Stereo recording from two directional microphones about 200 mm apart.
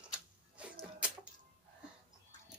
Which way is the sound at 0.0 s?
5° right (ahead or behind).